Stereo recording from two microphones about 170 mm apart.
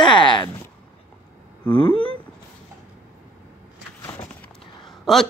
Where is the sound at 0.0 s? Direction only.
25° left (ahead or behind).